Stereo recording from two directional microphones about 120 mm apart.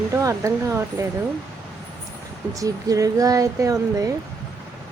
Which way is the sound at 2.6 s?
30° right (ahead or behind).